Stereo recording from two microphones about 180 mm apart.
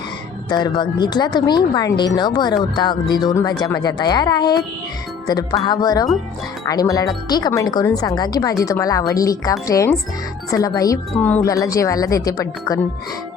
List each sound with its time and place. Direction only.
0.5 s speech: 25° left (ahead or behind)
11.1 s speech: 10° left (ahead or behind)